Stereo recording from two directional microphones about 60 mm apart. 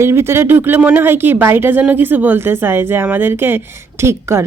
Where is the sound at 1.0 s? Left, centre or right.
Right.